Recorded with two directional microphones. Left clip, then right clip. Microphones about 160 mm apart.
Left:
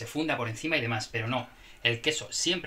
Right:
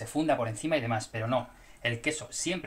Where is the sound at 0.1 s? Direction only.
40° right (ahead or behind).